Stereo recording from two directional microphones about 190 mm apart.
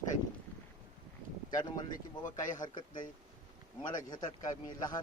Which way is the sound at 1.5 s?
20° left (ahead or behind).